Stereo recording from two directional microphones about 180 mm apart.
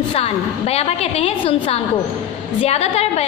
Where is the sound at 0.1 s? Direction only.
35° left (ahead or behind).